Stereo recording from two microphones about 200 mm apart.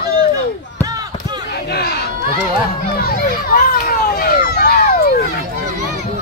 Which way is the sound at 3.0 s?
50° left (ahead or behind).